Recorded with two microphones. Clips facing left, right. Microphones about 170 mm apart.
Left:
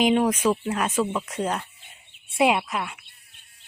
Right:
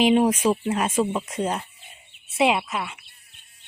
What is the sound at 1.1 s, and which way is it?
Speech, 30° right (ahead or behind).